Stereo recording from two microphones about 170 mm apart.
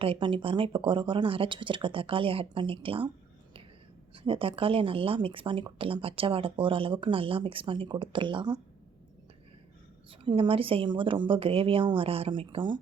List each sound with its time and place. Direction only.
0.0 s speech: 30° right (ahead or behind)
4.1 s speech: 30° right (ahead or behind)
10.1 s speech: 30° right (ahead or behind)